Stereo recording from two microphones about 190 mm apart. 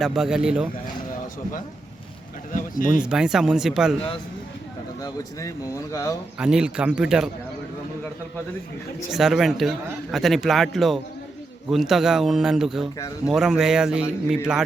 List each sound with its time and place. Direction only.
0.0 s speech: centre (ahead or behind)
2.5 s a sound: 45° left (ahead or behind)
3.0 s speech: 5° right (ahead or behind)
5.0 s speech: 15° left (ahead or behind)
6.4 s speech: 5° right (ahead or behind)
9.1 s speech: centre (ahead or behind)